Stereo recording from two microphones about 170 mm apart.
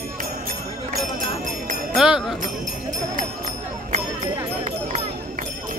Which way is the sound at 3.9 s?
45° right (ahead or behind).